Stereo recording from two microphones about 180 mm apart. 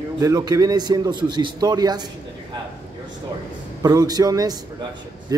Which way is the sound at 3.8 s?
20° right (ahead or behind).